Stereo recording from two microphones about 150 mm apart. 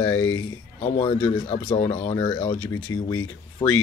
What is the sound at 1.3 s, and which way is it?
Speech, 35° left (ahead or behind).